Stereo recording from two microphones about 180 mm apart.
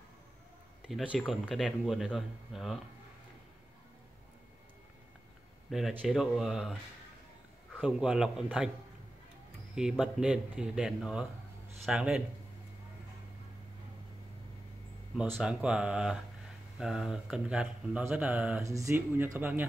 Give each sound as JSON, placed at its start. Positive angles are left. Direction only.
{"t": 0.8, "sound": "speech", "side_deg": -5}
{"t": 5.7, "sound": "speech", "side_deg": 0}
{"t": 7.8, "sound": "speech", "side_deg": -5}
{"t": 9.8, "sound": "speech", "side_deg": -5}
{"t": 15.3, "sound": "speech", "side_deg": -5}
{"t": 18.6, "sound": "speech", "side_deg": -15}